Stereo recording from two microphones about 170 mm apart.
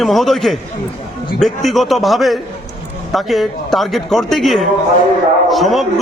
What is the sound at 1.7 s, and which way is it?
Speech, centre (ahead or behind).